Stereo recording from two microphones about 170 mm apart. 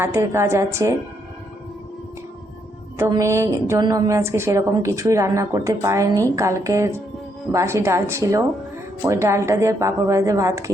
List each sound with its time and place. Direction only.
0.0 s a woman's voice: 15° right (ahead or behind)
3.0 s a woman's voice: 15° right (ahead or behind)